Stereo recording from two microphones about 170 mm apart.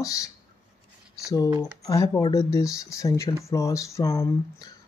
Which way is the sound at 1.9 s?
20° left (ahead or behind).